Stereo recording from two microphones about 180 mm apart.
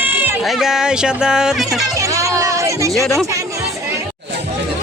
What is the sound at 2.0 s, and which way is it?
Music, 15° right (ahead or behind).